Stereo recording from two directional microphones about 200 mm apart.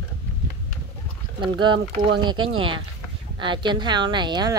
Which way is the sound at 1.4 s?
25° right (ahead or behind).